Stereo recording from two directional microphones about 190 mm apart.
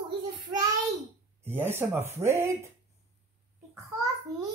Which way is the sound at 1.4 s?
10° right (ahead or behind).